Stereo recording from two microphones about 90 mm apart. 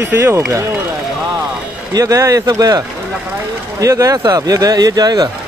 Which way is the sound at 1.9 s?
40° right (ahead or behind).